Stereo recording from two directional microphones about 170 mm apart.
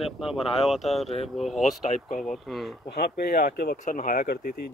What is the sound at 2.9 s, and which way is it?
Speech, 65° left (ahead or behind).